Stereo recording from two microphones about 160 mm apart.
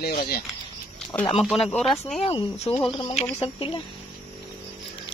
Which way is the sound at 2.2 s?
40° left (ahead or behind).